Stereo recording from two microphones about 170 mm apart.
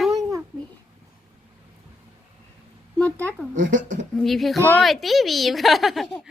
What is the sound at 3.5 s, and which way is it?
Speech, 50° right (ahead or behind).